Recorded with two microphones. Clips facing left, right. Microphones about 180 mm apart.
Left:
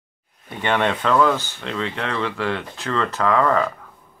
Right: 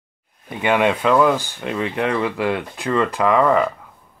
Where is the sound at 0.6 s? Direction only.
10° right (ahead or behind).